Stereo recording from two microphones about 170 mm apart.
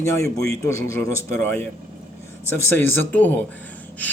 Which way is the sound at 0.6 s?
20° left (ahead or behind).